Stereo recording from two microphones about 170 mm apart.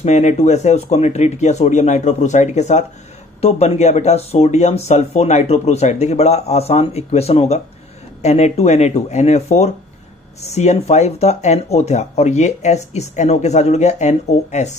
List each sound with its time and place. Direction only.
0.0 s speech: 45° left (ahead or behind)